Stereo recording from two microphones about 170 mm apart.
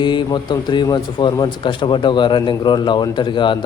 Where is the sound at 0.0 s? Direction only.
25° left (ahead or behind).